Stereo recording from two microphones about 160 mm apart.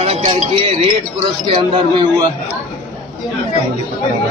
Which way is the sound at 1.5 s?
35° right (ahead or behind).